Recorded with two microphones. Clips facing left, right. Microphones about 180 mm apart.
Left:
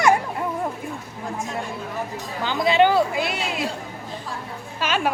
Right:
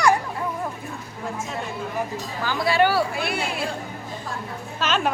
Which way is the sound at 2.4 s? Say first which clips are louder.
Left 3 dB; 20° left (ahead or behind).